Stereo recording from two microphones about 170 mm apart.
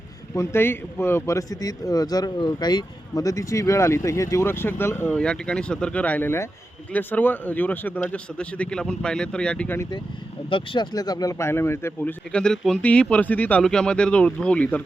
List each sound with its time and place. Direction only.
0.3 s speech: 15° left (ahead or behind)
10.5 s speech: 30° left (ahead or behind); by 14.8 s 10° left (ahead or behind)